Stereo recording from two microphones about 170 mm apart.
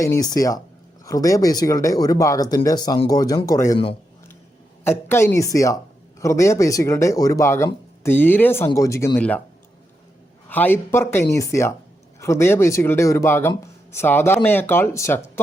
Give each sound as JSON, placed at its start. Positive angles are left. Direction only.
{"t": 0.0, "sound": "speech", "side_deg": 20}
{"t": 4.8, "sound": "speech", "side_deg": 15}
{"t": 10.5, "sound": "speech", "side_deg": 10}